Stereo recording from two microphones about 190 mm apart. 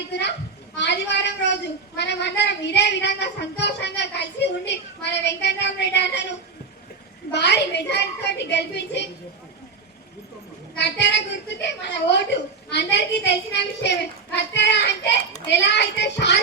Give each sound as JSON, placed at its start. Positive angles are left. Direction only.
{"t": 0.1, "sound": "a woman's voice", "side_deg": 65}
{"t": 7.3, "sound": "a woman's voice", "side_deg": 65}
{"t": 10.8, "sound": "a woman's voice", "side_deg": 65}